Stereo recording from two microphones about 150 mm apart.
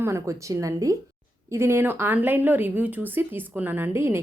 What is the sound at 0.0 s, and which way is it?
Speech, 20° right (ahead or behind).